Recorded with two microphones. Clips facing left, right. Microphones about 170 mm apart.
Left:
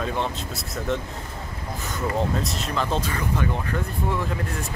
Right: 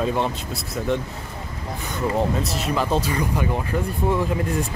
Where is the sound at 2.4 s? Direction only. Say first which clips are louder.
Right 3 dB; centre (ahead or behind).